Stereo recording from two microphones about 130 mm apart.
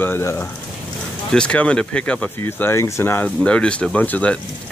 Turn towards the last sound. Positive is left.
turn(degrees=10)  # may be behind; listen again after turning